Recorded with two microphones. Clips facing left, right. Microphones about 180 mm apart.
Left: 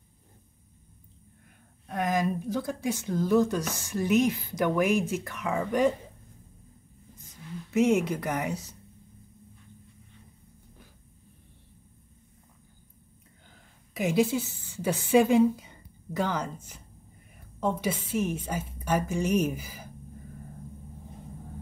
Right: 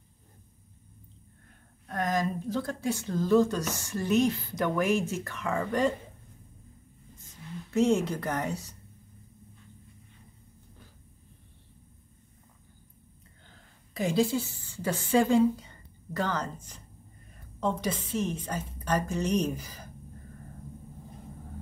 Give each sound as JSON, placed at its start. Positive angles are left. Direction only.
{"t": 1.9, "sound": "a woman's voice", "side_deg": 10}
{"t": 7.7, "sound": "a woman's voice", "side_deg": 15}
{"t": 13.5, "sound": "a sound", "side_deg": 15}
{"t": 14.8, "sound": "a woman's voice", "side_deg": 15}